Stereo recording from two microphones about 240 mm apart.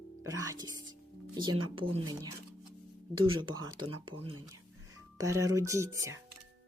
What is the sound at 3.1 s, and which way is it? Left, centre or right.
Speech, centre.